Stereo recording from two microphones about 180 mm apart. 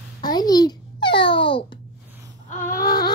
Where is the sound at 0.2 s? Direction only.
20° left (ahead or behind).